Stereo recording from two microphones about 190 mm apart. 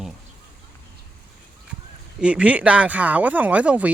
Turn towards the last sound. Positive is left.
turn(degrees=-5)  # may be behind; listen again after turning